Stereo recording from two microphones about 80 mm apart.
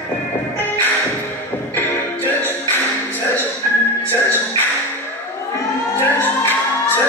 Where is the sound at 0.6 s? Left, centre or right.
Left.